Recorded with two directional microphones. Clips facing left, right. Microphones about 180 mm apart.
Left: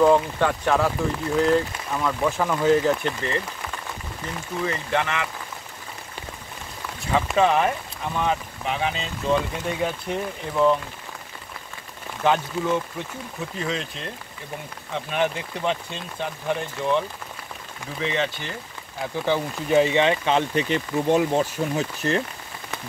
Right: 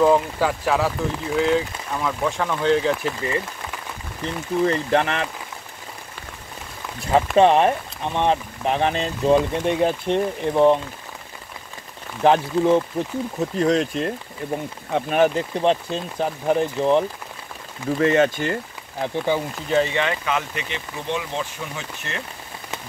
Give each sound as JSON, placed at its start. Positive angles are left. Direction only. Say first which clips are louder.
{"t": 0.0, "sound": "speech", "louder": "even", "side_deg": -5}
{"t": 4.6, "sound": "speech", "louder": "right 4 dB", "side_deg": -35}
{"t": 7.3, "sound": "speech", "louder": "right 5 dB", "side_deg": -30}
{"t": 8.6, "sound": "speech", "louder": "right 5 dB", "side_deg": -40}
{"t": 9.3, "sound": "speech", "louder": "right 5 dB", "side_deg": -30}
{"t": 12.2, "sound": "speech", "louder": "right 5 dB", "side_deg": -30}
{"t": 13.4, "sound": "speech", "louder": "right 9 dB", "side_deg": -45}
{"t": 17.9, "sound": "speech", "louder": "right 8 dB", "side_deg": -50}
{"t": 19.1, "sound": "speech", "louder": "right 1 dB", "side_deg": -15}
{"t": 19.7, "sound": "speech", "louder": "left 2 dB", "side_deg": 15}